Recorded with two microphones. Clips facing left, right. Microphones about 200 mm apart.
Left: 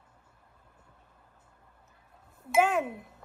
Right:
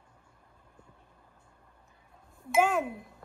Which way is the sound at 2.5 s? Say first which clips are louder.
Left 1 dB; centre (ahead or behind).